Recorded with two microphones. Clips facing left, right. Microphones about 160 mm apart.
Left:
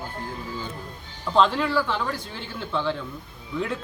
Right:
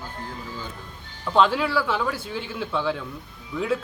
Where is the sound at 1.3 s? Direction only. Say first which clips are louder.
Even; 5° right (ahead or behind).